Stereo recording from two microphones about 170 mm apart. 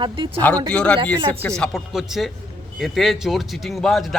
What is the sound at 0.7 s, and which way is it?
A man's voice, 5° left (ahead or behind).